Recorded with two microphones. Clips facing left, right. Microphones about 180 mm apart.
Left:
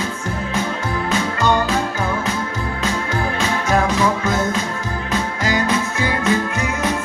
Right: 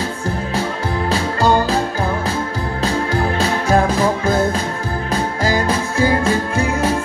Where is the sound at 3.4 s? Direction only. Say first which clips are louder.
Right 2 dB; 35° right (ahead or behind).